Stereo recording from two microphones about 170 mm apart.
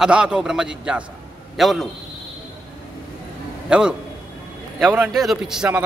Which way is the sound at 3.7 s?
5° right (ahead or behind).